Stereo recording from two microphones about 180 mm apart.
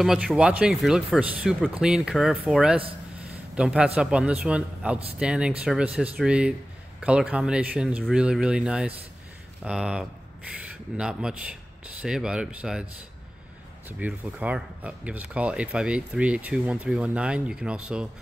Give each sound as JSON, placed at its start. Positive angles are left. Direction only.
{"t": 0.0, "sound": "speech", "side_deg": 0}
{"t": 13.8, "sound": "speech", "side_deg": -10}